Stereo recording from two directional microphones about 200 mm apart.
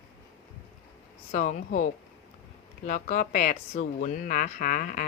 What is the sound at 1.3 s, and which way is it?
Speech, 35° left (ahead or behind).